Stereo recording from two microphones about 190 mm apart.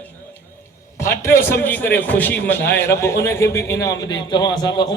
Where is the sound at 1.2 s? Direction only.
10° left (ahead or behind).